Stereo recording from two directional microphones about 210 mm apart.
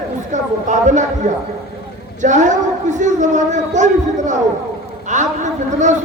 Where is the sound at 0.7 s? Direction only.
35° right (ahead or behind).